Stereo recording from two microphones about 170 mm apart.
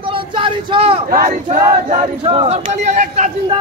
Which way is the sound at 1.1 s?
60° right (ahead or behind).